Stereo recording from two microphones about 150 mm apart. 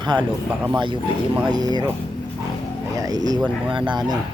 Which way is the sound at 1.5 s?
30° right (ahead or behind).